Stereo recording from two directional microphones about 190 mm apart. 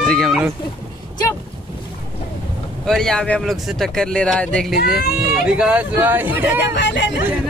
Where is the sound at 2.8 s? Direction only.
Centre (ahead or behind).